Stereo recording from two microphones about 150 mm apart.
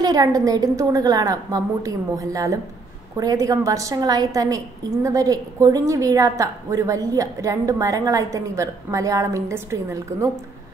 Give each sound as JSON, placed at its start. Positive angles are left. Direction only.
{"t": 0.0, "sound": "a woman's voice", "side_deg": -25}